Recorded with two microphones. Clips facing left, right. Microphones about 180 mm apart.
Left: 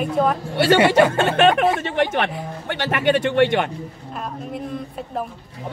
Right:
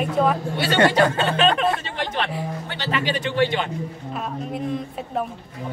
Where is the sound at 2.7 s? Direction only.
60° left (ahead or behind).